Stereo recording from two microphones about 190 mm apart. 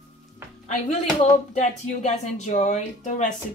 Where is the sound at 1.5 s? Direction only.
40° left (ahead or behind).